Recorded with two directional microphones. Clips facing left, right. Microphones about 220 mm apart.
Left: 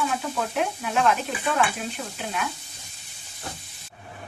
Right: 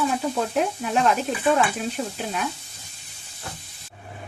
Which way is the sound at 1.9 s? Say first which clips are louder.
Right 4 dB; 35° right (ahead or behind).